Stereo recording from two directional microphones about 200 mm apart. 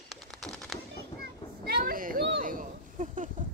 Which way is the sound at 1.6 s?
45° right (ahead or behind).